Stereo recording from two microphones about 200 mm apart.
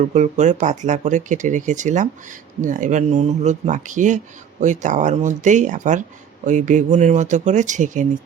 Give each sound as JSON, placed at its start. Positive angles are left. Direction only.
{"t": 0.0, "sound": "speech", "side_deg": -35}